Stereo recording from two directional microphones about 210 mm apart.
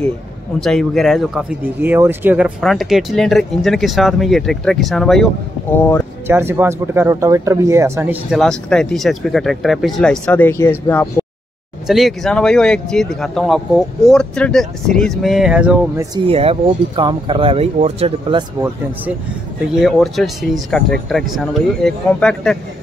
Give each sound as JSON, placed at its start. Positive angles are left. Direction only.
{"t": 0.6, "sound": "speech", "side_deg": 0}
{"t": 6.2, "sound": "speech", "side_deg": -10}
{"t": 16.3, "sound": "speech", "side_deg": -25}
{"t": 19.6, "sound": "speech", "side_deg": 0}